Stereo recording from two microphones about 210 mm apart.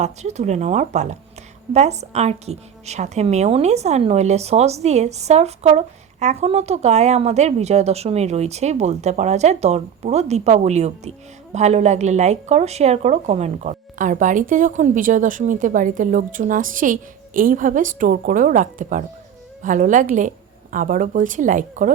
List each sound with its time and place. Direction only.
0.0 s a woman's voice: 30° right (ahead or behind)